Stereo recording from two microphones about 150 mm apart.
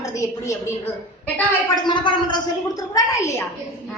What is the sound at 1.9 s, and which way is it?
A child's voice, 30° left (ahead or behind).